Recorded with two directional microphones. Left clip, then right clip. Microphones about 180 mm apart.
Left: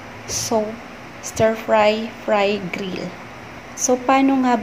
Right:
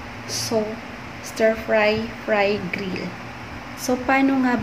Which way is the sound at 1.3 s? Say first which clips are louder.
Left 2 dB; 25° left (ahead or behind).